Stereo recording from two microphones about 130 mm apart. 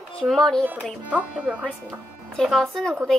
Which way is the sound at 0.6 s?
10° right (ahead or behind).